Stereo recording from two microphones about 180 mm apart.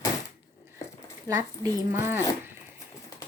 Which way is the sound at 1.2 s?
20° right (ahead or behind).